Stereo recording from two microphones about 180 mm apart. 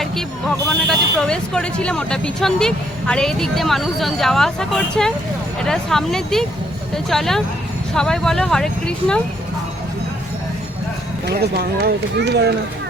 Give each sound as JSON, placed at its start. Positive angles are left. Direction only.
{"t": 0.0, "sound": "speech", "side_deg": 0}
{"t": 11.3, "sound": "speech", "side_deg": -60}